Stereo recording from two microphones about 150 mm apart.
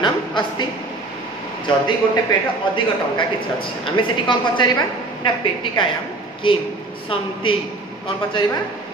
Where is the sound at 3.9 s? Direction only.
30° left (ahead or behind).